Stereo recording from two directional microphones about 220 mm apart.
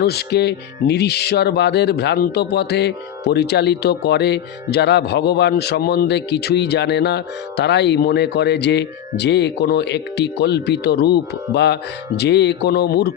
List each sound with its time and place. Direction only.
0.0 s music: 45° left (ahead or behind)